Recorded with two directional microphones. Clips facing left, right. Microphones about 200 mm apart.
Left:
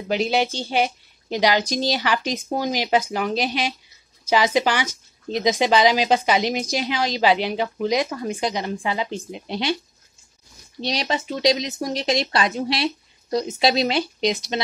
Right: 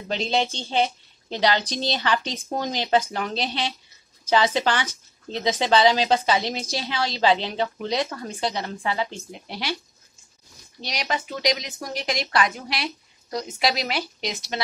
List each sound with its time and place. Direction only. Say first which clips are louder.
0.1 s speech: left 3 dB; 10° left (ahead or behind)
10.8 s speech: left 4 dB; 25° left (ahead or behind)